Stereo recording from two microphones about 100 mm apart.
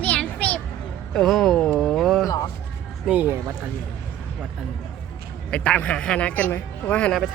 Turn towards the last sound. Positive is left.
turn(degrees=15)  # may be behind; listen again after turning